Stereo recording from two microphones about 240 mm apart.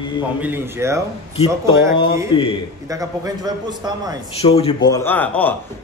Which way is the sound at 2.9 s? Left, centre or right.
Centre.